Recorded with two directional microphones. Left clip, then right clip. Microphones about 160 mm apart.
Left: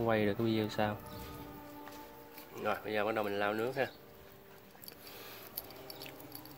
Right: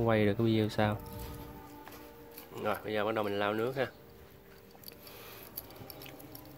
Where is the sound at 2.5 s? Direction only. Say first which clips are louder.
Right 1 dB; 15° right (ahead or behind).